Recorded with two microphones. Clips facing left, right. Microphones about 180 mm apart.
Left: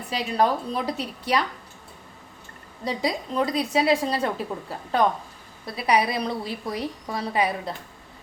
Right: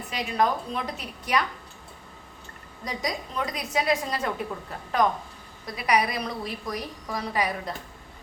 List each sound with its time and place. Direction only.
0.1 s a woman's voice: 35° left (ahead or behind)
2.8 s a woman's voice: 30° left (ahead or behind)
5.6 s a woman's voice: 30° left (ahead or behind)